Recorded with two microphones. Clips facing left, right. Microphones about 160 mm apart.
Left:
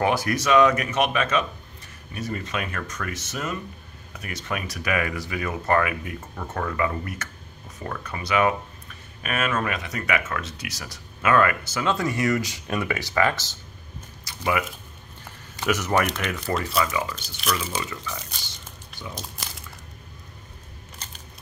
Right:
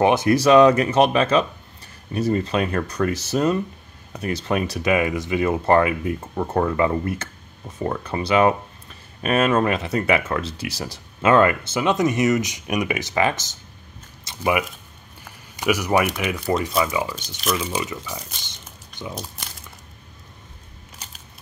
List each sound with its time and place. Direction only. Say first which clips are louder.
0.0 s speech: right 7 dB; 20° right (ahead or behind)
14.2 s a sound: right 4 dB; 20° right (ahead or behind)
15.5 s speech: right 3 dB; 10° right (ahead or behind)